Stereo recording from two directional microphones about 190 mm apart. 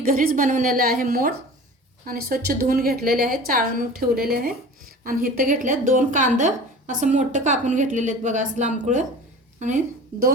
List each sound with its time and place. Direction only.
0.0 s a woman's voice: 50° right (ahead or behind)